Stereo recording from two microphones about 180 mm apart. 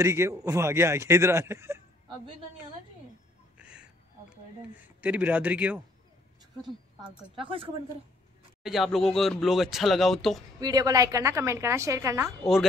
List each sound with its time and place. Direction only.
0.0 s a woman's voice: 15° right (ahead or behind)
3.5 s a sound: 5° right (ahead or behind)
5.0 s a woman's voice: 10° right (ahead or behind)
7.0 s a woman's voice: 30° right (ahead or behind)
8.6 s speech: centre (ahead or behind)
10.6 s a woman's voice: 20° right (ahead or behind)